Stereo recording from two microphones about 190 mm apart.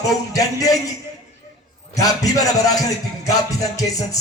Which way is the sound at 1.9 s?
20° left (ahead or behind).